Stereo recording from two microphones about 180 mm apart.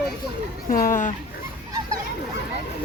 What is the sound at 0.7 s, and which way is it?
Speech, 50° left (ahead or behind).